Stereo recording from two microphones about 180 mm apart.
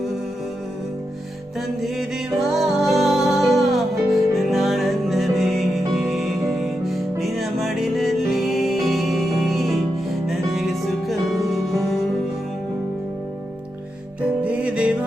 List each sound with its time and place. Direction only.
1.8 s music: centre (ahead or behind)
14.2 s music: 5° right (ahead or behind)